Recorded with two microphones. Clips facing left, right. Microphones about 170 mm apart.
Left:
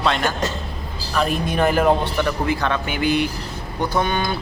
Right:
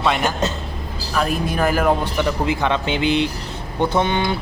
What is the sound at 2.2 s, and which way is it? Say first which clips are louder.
Speech: right 1 dB; 20° right (ahead or behind).